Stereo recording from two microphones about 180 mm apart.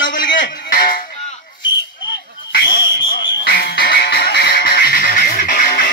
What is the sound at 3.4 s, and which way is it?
Music, 60° left (ahead or behind).